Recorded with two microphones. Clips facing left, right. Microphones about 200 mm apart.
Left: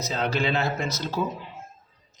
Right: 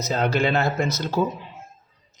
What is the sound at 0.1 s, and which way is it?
Speech, 50° right (ahead or behind).